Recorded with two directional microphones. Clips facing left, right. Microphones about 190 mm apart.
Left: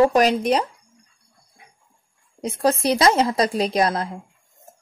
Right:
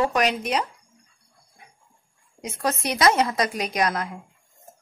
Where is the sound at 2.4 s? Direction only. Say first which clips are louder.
Left 7 dB; 30° left (ahead or behind).